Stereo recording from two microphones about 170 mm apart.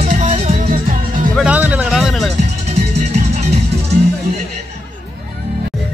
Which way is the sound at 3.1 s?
40° right (ahead or behind).